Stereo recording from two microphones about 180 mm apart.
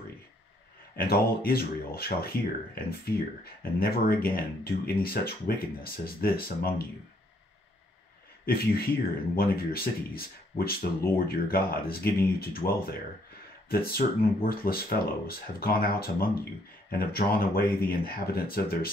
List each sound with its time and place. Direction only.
0.9 s speech: 55° left (ahead or behind)
8.5 s speech: 55° left (ahead or behind)